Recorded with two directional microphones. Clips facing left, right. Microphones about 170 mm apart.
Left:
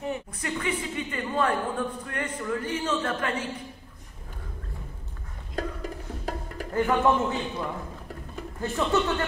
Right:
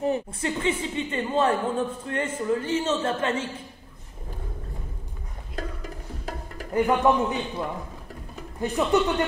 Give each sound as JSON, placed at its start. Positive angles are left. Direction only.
{"t": 0.0, "sound": "a woman's voice", "side_deg": -30}
{"t": 5.6, "sound": "music", "side_deg": 45}
{"t": 6.7, "sound": "a man's voice", "side_deg": -15}